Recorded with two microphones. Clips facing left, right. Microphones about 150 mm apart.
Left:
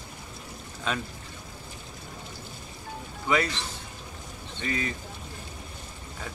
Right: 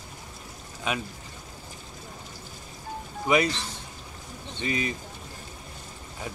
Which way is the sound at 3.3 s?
15° right (ahead or behind).